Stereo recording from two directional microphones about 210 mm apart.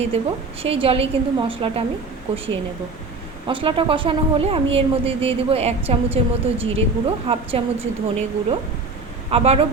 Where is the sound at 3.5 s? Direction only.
25° right (ahead or behind).